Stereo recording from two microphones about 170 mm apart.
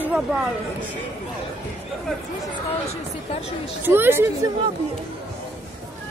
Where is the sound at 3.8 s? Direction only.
15° right (ahead or behind).